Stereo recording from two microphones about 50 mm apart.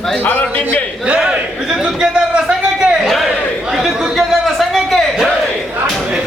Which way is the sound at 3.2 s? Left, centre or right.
Centre.